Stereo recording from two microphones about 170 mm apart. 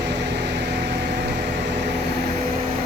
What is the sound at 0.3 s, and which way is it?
Vehicle, 90° right.